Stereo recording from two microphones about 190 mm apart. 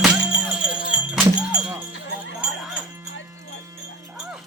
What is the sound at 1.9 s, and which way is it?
Jingle bell, 65° left (ahead or behind).